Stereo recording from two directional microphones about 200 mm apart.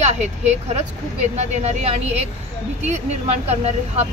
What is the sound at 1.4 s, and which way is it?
Speech, 30° right (ahead or behind).